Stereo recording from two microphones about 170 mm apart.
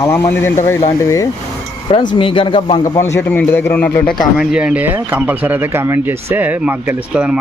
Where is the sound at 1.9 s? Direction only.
30° left (ahead or behind); by 3.9 s 10° left (ahead or behind).